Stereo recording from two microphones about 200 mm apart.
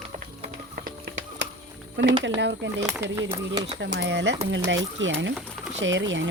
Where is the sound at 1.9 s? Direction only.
60° right (ahead or behind).